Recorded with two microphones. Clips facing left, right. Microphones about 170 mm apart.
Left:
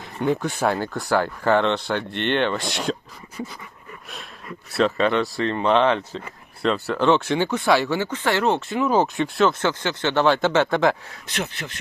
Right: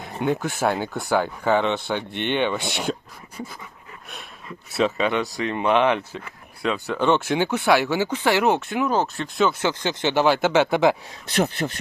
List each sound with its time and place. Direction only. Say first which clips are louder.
0.3 s speech: left 1 dB; 5° right (ahead or behind)
4.7 s speech: left 2 dB; 5° right (ahead or behind)
9.6 s speech: even; 15° right (ahead or behind)
11.3 s speech: right 7 dB; 40° right (ahead or behind)